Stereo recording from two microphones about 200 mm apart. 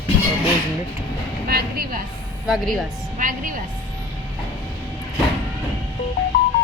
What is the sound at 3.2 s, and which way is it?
Speech, 40° right (ahead or behind).